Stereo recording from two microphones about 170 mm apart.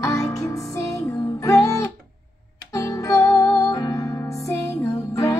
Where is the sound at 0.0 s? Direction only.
20° left (ahead or behind).